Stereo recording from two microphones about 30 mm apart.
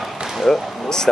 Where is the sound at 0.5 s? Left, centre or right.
Left.